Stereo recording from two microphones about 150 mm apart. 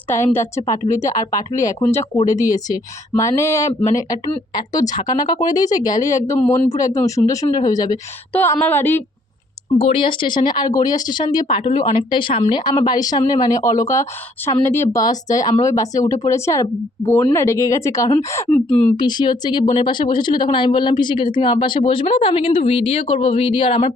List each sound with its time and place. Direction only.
0.3 s speech: 20° left (ahead or behind)
8.3 s speech: 10° left (ahead or behind)
9.8 s speech: 35° left (ahead or behind); by 18.4 s 20° left (ahead or behind)
18.5 s speech: 10° left (ahead or behind)
18.9 s speech: 30° left (ahead or behind)